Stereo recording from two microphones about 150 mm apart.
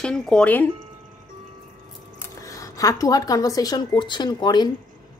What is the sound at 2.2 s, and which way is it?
Speech, 20° left (ahead or behind).